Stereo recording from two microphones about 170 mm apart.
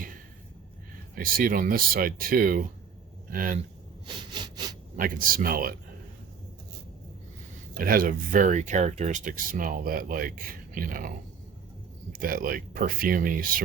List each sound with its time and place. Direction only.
1.1 s speech: 60° right (ahead or behind)
4.0 s sawing: 25° right (ahead or behind)
4.9 s speech: 55° right (ahead or behind)
7.8 s speech: 55° right (ahead or behind)
12.1 s speech: 55° right (ahead or behind)